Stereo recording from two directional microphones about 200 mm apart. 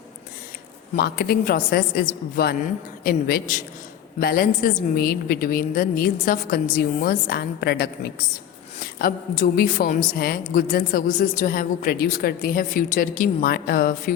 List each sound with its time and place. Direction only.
0.9 s a woman's voice: 55° left (ahead or behind)
9.0 s a woman's voice: 40° left (ahead or behind)